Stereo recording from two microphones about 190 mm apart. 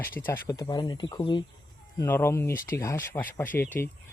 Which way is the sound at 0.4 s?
20° left (ahead or behind).